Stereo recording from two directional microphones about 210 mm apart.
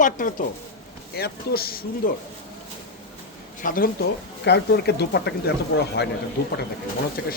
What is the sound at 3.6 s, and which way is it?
Speech, 40° left (ahead or behind).